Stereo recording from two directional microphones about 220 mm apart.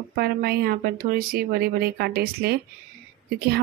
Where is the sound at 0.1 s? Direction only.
45° right (ahead or behind).